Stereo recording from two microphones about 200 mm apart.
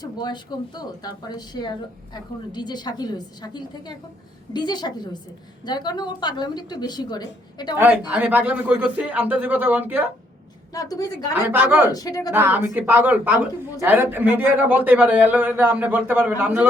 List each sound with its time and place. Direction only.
0.0 s a woman's voice: 20° left (ahead or behind)
7.8 s speech: 10° right (ahead or behind)
10.8 s a woman's voice: 20° left (ahead or behind)
11.3 s speech: 10° right (ahead or behind)
11.9 s a woman's voice: 20° left (ahead or behind)
12.3 s speech: 10° right (ahead or behind)